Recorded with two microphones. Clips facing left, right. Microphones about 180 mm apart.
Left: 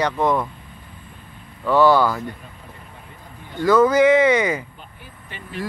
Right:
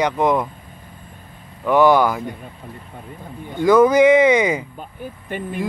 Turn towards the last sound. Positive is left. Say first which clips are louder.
# right 7 dB
turn(degrees=-50)  # may be behind; listen again after turning